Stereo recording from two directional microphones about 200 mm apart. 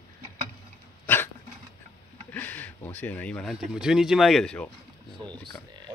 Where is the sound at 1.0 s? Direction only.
10° left (ahead or behind).